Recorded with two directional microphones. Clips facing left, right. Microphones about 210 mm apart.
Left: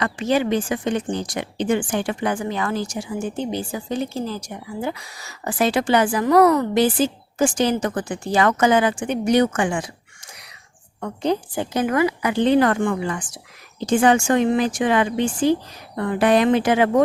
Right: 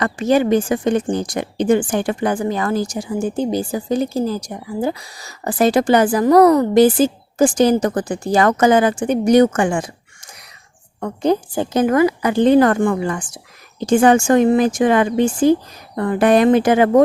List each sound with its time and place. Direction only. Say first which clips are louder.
0.0 s a woman's voice: right 5 dB; 45° right (ahead or behind)
11.0 s a woman's voice: right 5 dB; 45° right (ahead or behind)